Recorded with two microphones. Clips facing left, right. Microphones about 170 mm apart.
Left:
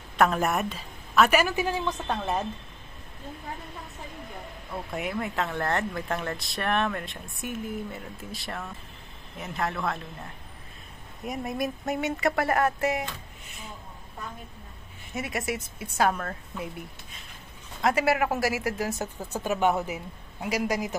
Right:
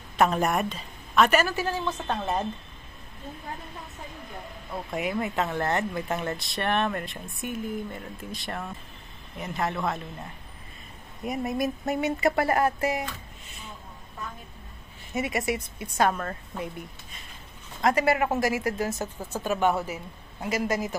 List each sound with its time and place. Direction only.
0.4 s a woman's voice: centre (ahead or behind)
1.9 s speech: 5° right (ahead or behind)
4.9 s speech: centre (ahead or behind)
15.1 s speech: centre (ahead or behind)
17.8 s a woman's voice: 5° left (ahead or behind)